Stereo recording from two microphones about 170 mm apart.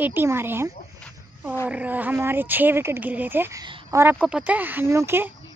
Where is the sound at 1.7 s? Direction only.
10° right (ahead or behind).